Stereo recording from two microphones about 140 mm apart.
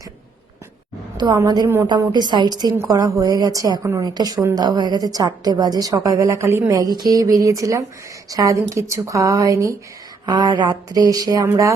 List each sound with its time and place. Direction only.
1.1 s a woman's voice: 30° right (ahead or behind)